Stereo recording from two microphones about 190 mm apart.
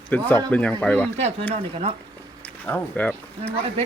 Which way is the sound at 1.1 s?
35° right (ahead or behind).